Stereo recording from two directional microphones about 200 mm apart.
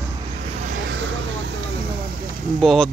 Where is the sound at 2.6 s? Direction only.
Centre (ahead or behind).